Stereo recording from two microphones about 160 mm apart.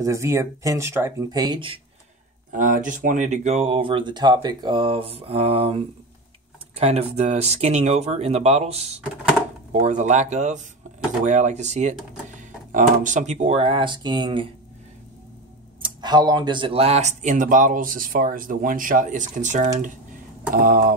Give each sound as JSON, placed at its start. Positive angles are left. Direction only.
{"t": 0.0, "sound": "speech", "side_deg": -20}
{"t": 2.5, "sound": "speech", "side_deg": -55}
{"t": 6.8, "sound": "speech", "side_deg": -40}
{"t": 15.8, "sound": "speech", "side_deg": -25}
{"t": 20.5, "sound": "speech", "side_deg": -65}